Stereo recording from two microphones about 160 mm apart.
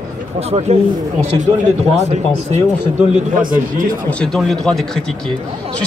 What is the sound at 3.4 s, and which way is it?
Speech, 60° right (ahead or behind).